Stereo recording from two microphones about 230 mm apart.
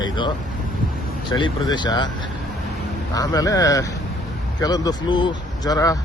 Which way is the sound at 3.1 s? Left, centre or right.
Centre.